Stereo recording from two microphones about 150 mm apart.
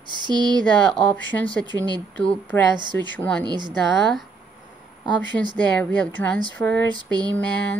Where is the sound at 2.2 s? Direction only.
10° left (ahead or behind).